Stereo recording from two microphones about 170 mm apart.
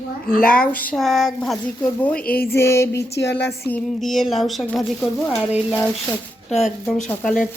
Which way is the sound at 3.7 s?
Centre (ahead or behind).